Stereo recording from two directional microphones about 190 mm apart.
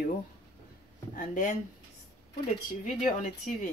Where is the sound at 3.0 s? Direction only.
45° left (ahead or behind).